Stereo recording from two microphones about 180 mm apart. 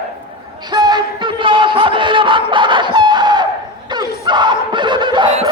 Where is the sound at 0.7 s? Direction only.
25° right (ahead or behind).